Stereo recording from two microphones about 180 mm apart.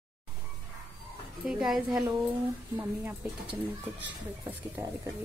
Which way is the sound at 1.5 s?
Centre (ahead or behind).